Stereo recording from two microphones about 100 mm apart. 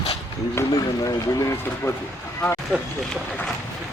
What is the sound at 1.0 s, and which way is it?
Speech, 35° left (ahead or behind).